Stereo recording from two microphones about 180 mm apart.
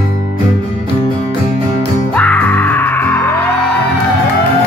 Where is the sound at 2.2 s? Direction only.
10° left (ahead or behind).